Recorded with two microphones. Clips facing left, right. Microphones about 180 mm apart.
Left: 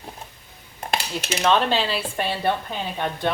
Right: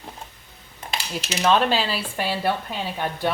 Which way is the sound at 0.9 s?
55° left (ahead or behind).